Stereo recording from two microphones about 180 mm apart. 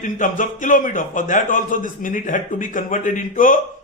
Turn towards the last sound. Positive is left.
turn(degrees=45)  # may be behind; listen again after turning